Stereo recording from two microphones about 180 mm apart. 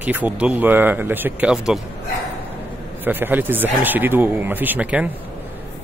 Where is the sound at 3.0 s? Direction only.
10° right (ahead or behind).